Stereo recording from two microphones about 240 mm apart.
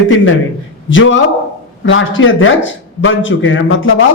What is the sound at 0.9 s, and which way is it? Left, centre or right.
A woman's voice, left.